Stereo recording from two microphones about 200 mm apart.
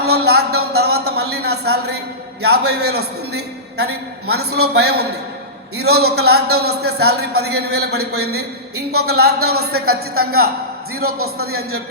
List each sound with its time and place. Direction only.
0.0 s a man's voice: 55° right (ahead or behind)